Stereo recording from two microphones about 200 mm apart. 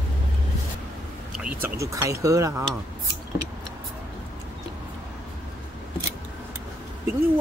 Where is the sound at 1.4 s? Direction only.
10° right (ahead or behind).